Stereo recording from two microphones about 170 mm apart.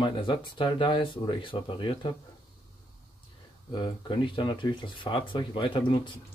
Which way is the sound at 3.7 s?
30° left (ahead or behind).